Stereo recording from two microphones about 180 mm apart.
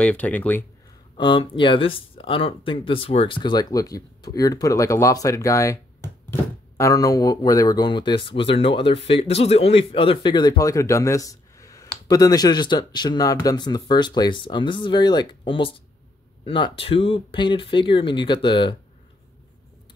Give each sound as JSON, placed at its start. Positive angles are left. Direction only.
{"t": 0.0, "sound": "speech", "side_deg": 10}
{"t": 1.1, "sound": "speech", "side_deg": 25}